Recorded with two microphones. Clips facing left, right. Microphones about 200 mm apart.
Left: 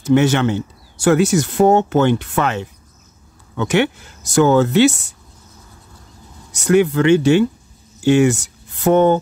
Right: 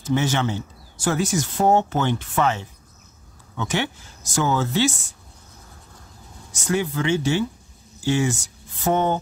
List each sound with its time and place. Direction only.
0.0 s speech: 65° left (ahead or behind)
6.5 s speech: 65° left (ahead or behind)